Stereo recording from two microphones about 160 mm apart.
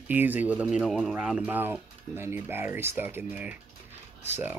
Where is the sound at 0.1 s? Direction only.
10° right (ahead or behind).